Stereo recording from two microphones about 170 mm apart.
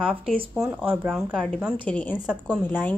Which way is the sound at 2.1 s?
5° right (ahead or behind).